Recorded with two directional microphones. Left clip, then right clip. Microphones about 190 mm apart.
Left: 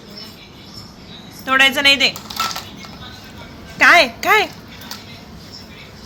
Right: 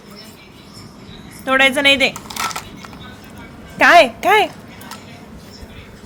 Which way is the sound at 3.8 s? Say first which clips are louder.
Right 1 dB; 20° right (ahead or behind).